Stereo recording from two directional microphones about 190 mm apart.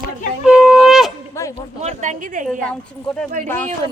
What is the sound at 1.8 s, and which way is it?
Speech, 40° right (ahead or behind).